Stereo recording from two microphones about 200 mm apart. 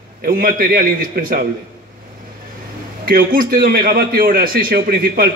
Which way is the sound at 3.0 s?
45° right (ahead or behind).